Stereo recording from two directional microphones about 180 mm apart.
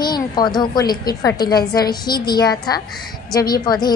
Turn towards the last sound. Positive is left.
turn(degrees=25)  # may be behind; listen again after turning